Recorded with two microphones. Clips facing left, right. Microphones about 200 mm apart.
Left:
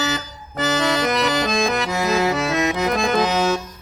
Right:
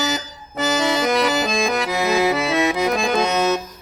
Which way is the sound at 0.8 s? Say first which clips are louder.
Right 2 dB; 5° right (ahead or behind).